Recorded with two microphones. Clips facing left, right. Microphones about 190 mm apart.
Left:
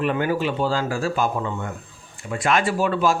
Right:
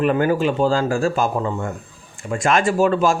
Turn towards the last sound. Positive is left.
turn(degrees=-45)  # may be behind; listen again after turning